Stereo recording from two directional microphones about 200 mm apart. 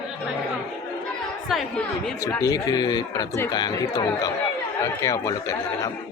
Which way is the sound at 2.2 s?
15° left (ahead or behind).